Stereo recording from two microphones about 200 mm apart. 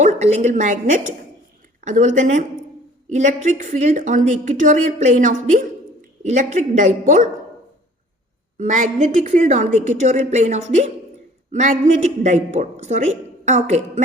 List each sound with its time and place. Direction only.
0.0 s a woman's voice: 35° right (ahead or behind)
8.5 s speech: 40° right (ahead or behind)